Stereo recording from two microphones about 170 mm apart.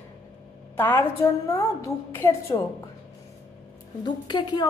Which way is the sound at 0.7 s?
15° left (ahead or behind).